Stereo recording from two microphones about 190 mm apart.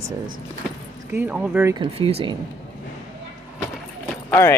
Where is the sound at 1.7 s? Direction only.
30° right (ahead or behind).